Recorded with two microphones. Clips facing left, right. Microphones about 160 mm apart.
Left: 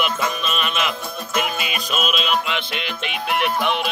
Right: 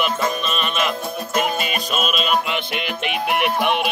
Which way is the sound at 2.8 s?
50° right (ahead or behind).